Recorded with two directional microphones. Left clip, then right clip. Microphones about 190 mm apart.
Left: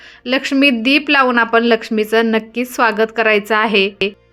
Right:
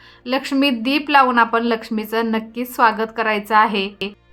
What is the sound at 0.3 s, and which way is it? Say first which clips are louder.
Speech: left 5 dB; 15° left (ahead or behind).